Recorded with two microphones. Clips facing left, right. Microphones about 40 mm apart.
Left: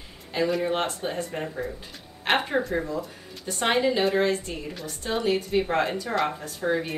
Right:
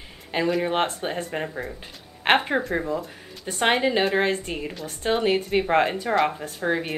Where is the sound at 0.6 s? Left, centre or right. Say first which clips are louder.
Right 3 dB; right.